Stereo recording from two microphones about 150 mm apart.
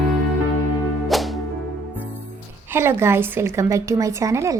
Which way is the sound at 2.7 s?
15° right (ahead or behind).